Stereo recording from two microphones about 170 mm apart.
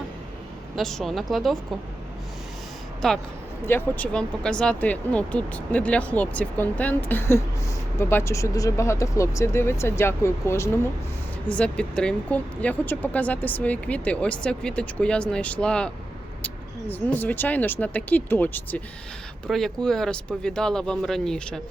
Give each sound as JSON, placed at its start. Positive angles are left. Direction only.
{"t": 0.8, "sound": "speech", "side_deg": 0}
{"t": 3.0, "sound": "speech", "side_deg": 0}
{"t": 16.9, "sound": "speech", "side_deg": 10}